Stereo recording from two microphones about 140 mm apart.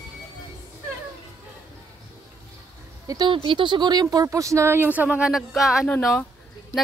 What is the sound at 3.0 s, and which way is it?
Speech, 25° right (ahead or behind).